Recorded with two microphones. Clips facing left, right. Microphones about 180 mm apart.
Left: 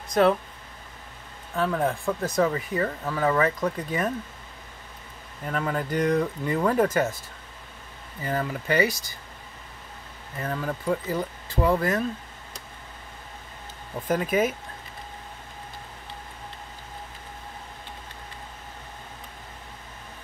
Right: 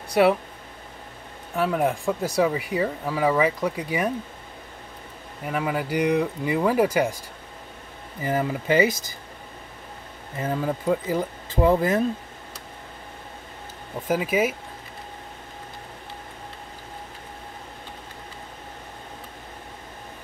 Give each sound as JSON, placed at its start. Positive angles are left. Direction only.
{"t": 0.1, "sound": "speech", "side_deg": -10}
{"t": 1.5, "sound": "speech", "side_deg": -10}
{"t": 5.4, "sound": "speech", "side_deg": -10}
{"t": 8.2, "sound": "speech", "side_deg": -20}
{"t": 10.3, "sound": "speech", "side_deg": -20}
{"t": 14.0, "sound": "speech", "side_deg": -5}